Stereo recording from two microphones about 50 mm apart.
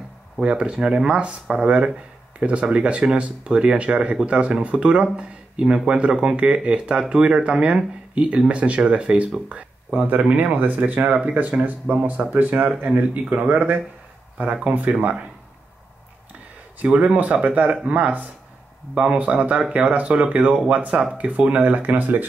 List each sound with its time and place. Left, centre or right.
0.4 s speech: right
16.8 s speech: right